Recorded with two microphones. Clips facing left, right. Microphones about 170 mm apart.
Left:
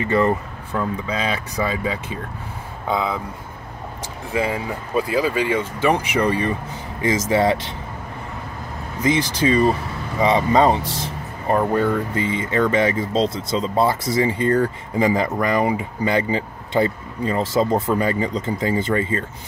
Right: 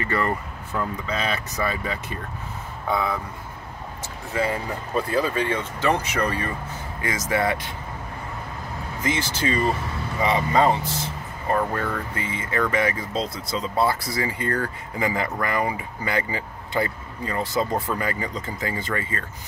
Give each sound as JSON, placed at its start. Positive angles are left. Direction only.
{"t": 0.0, "sound": "speech", "side_deg": 20}
{"t": 4.3, "sound": "speech", "side_deg": 15}
{"t": 9.0, "sound": "speech", "side_deg": 15}